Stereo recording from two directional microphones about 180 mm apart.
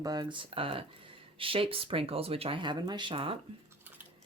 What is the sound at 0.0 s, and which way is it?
Speech, 25° right (ahead or behind).